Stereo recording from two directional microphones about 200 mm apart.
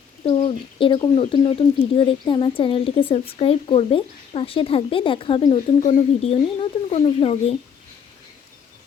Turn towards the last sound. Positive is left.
turn(degrees=30)  # may be behind; listen again after turning